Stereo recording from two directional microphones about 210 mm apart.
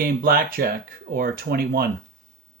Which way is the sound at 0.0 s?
45° right (ahead or behind).